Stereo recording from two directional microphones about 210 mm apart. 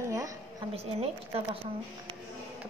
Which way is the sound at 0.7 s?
30° right (ahead or behind).